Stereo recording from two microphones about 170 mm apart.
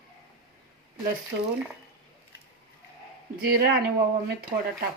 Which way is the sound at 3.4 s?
65° right (ahead or behind).